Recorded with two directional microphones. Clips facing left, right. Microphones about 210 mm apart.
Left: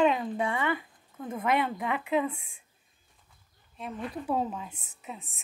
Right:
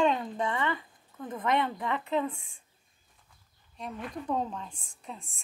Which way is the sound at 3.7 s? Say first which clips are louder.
Left 2 dB; 5° left (ahead or behind).